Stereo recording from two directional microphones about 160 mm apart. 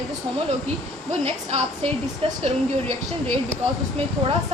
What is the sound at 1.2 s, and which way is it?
Speech, 40° right (ahead or behind).